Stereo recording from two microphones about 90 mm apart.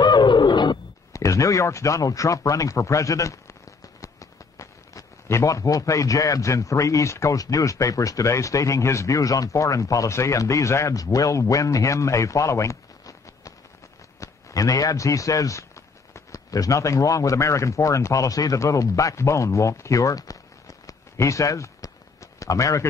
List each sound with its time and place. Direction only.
0.0 s bird: 55° left (ahead or behind)
1.1 s a man's voice: 35° left (ahead or behind)